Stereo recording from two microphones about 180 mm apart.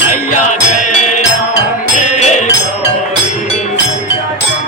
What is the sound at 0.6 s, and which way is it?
Music, 40° left (ahead or behind).